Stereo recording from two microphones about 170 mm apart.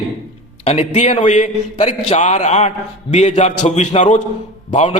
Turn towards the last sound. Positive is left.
turn(degrees=40)  # may be behind; listen again after turning